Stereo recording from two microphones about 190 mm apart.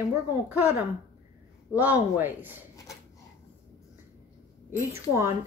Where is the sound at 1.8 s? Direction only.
10° right (ahead or behind).